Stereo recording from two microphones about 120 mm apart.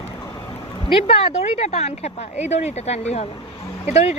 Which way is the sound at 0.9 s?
55° left (ahead or behind).